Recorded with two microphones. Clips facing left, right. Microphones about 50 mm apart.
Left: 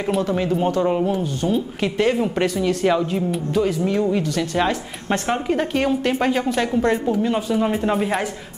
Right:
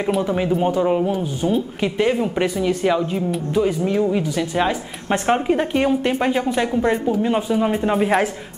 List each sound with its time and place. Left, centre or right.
0.2 s speech: centre
5.1 s a woman's voice: right
7.6 s speech: centre